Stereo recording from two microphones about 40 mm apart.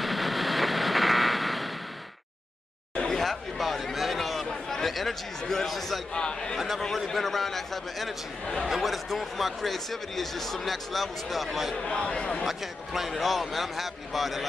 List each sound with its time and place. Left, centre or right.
0.0 s vehicle: centre
3.0 s chatter: centre
5.7 s speech: centre
6.1 s speech: left
7.1 s speech: centre
11.7 s speech: left
12.4 s speech: centre